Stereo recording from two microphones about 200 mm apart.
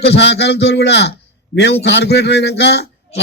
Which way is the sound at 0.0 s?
60° left (ahead or behind).